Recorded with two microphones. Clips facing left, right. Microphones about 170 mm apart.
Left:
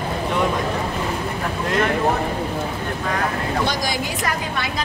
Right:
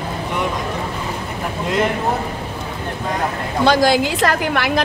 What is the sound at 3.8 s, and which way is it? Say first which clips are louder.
A woman's voice: right 9 dB; 75° right (ahead or behind).